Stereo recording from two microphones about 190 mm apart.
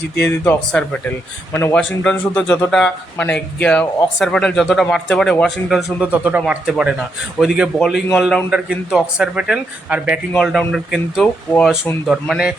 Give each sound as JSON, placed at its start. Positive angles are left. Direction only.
{"t": 0.2, "sound": "a man's voice", "side_deg": 5}